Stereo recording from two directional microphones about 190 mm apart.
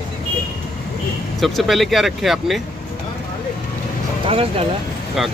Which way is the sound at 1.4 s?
Centre (ahead or behind).